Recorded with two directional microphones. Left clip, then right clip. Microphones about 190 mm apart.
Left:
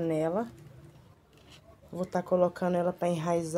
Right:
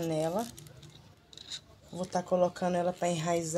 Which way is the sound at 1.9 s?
15° left (ahead or behind).